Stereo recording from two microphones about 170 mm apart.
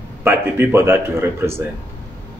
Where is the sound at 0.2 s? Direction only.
15° right (ahead or behind).